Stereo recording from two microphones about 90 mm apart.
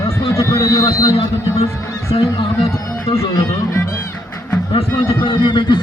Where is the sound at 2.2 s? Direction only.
90° left.